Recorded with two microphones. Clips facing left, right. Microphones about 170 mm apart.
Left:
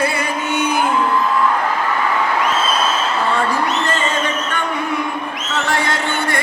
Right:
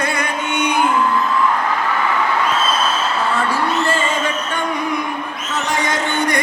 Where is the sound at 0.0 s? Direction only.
5° left (ahead or behind).